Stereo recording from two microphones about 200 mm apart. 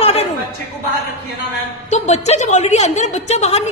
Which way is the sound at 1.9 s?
35° left (ahead or behind).